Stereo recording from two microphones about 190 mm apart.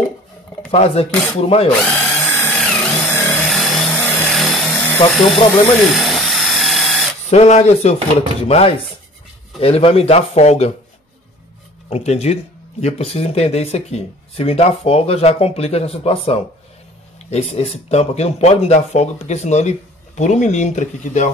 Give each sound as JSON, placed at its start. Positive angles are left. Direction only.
{"t": 0.7, "sound": "speech", "side_deg": 30}
{"t": 1.9, "sound": "drill", "side_deg": 5}
{"t": 3.4, "sound": "a sound", "side_deg": 0}
{"t": 7.2, "sound": "speech", "side_deg": 35}
{"t": 11.9, "sound": "speech", "side_deg": 35}